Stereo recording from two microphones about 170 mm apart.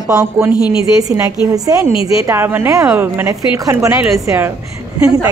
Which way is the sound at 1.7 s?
20° right (ahead or behind).